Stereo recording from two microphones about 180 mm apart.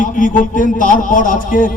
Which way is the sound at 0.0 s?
50° left (ahead or behind).